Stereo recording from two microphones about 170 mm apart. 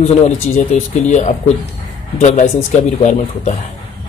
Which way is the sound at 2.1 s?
50° left (ahead or behind).